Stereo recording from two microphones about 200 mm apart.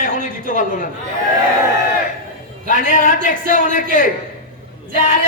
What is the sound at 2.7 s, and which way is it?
Speech, 40° left (ahead or behind).